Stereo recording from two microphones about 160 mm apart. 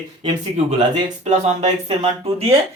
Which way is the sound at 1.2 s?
45° right (ahead or behind).